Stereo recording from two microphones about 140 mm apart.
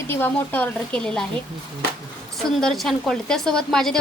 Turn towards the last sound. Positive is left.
turn(degrees=5)  # may be behind; listen again after turning